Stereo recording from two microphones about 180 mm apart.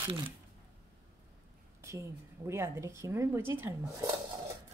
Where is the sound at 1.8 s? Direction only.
15° right (ahead or behind).